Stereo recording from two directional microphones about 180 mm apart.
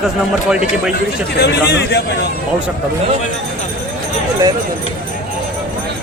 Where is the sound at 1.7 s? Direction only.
65° left (ahead or behind).